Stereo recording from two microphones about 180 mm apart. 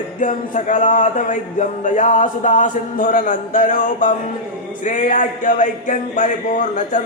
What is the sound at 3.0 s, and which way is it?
Speech, 50° left (ahead or behind).